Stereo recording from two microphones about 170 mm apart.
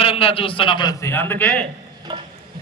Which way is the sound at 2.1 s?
25° right (ahead or behind).